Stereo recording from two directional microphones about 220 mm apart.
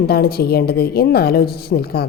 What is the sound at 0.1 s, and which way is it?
A woman's voice, 45° left (ahead or behind).